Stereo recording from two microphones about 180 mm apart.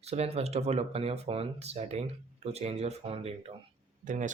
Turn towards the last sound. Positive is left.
turn(degrees=-45)  # may be behind; listen again after turning